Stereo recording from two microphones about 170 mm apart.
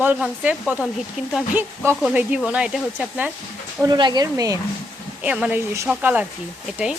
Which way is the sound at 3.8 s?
25° right (ahead or behind).